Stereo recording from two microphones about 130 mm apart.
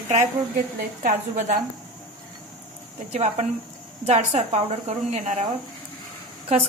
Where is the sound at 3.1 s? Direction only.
55° right (ahead or behind).